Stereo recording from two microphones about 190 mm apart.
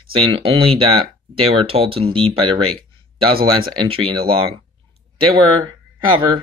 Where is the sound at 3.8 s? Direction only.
30° right (ahead or behind).